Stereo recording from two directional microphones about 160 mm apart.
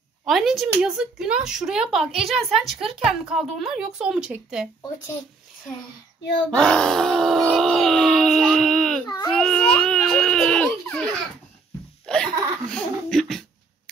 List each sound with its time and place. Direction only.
0.2 s speech: centre (ahead or behind)
6.5 s a sound: 5° left (ahead or behind)
9.0 s baby cry: 25° left (ahead or behind)
9.3 s baby cry: 5° left (ahead or behind)
12.1 s laughter: 5° left (ahead or behind)